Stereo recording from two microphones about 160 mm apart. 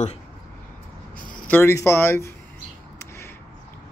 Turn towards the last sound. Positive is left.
turn(degrees=15)  # may be behind; listen again after turning